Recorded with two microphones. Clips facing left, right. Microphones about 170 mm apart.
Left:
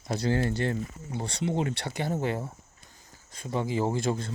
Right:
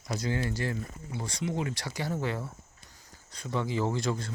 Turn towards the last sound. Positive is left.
turn(degrees=15)  # may be behind; listen again after turning